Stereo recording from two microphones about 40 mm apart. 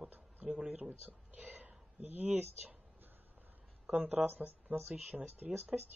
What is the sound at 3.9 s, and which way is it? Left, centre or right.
Speech, right.